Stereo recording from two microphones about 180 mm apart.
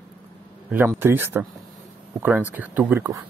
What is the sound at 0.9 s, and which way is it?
A man's voice, 10° right (ahead or behind).